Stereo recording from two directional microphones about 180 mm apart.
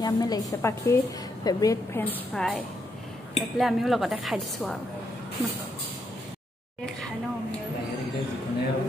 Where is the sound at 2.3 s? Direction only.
Centre (ahead or behind).